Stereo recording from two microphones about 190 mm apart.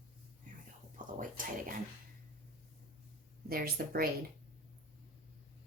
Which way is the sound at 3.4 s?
50° right (ahead or behind).